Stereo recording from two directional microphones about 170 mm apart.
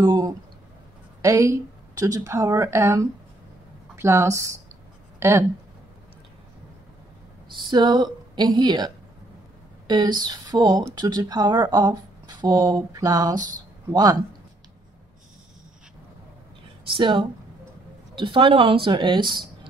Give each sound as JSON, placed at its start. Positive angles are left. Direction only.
{"t": 0.0, "sound": "a woman's voice", "side_deg": -25}
{"t": 7.4, "sound": "speech", "side_deg": -25}
{"t": 16.8, "sound": "a woman's voice", "side_deg": -30}